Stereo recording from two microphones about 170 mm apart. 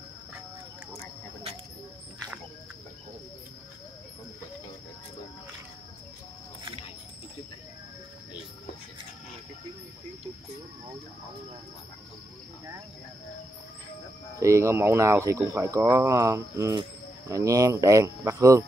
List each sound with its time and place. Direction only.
14.4 s speech: 15° right (ahead or behind)